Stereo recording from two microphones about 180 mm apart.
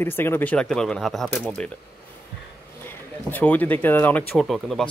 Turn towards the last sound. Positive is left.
turn(degrees=0)  # may be behind; listen again after turning